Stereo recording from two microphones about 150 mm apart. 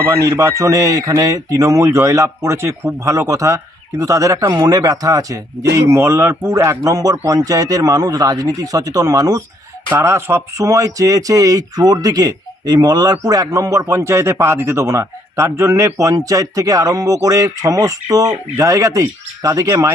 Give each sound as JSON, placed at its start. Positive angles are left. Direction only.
{"t": 0.1, "sound": "speech", "side_deg": -20}